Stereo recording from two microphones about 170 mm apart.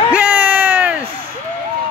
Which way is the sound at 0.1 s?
10° right (ahead or behind).